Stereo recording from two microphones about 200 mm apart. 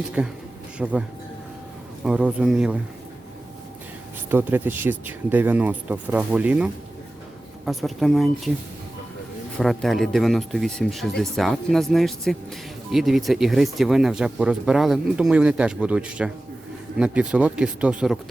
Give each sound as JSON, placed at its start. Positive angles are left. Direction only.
{"t": 0.2, "sound": "speech", "side_deg": -5}
{"t": 2.0, "sound": "speech", "side_deg": -5}
{"t": 4.3, "sound": "speech", "side_deg": -10}
{"t": 9.6, "sound": "speech", "side_deg": 0}